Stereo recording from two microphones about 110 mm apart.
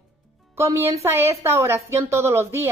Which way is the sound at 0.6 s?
25° right (ahead or behind).